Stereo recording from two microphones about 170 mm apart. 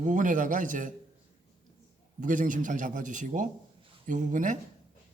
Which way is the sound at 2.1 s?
50° right (ahead or behind).